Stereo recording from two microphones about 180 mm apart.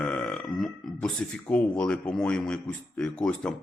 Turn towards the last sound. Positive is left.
turn(degrees=5)  # may be behind; listen again after turning